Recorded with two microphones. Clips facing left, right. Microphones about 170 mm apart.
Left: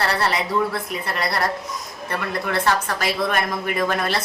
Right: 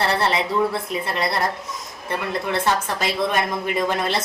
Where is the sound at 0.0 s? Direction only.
25° right (ahead or behind).